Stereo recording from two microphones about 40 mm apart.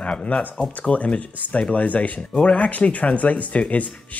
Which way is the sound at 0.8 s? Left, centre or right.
Left.